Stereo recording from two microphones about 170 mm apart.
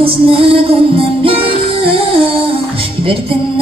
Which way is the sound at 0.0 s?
30° right (ahead or behind).